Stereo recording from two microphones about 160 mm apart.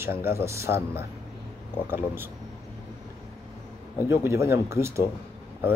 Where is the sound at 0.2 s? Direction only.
15° right (ahead or behind).